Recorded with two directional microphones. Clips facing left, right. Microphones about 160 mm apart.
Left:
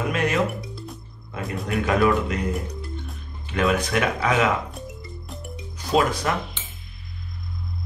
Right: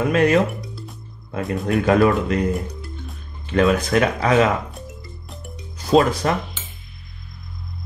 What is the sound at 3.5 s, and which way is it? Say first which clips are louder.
Speech: right 5 dB; 35° right (ahead or behind).